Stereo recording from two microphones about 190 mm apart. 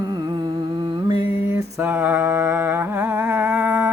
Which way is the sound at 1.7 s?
10° right (ahead or behind).